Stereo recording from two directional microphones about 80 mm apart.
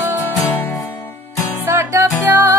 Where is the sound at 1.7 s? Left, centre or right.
Right.